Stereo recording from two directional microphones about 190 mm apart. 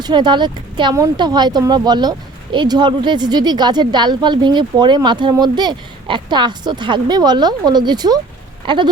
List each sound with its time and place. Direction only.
0.0 s speech: 25° right (ahead or behind)